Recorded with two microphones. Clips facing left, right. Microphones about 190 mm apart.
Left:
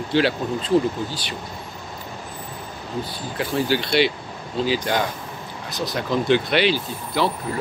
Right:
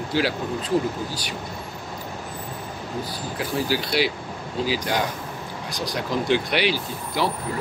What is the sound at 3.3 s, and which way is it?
Speech, 5° right (ahead or behind).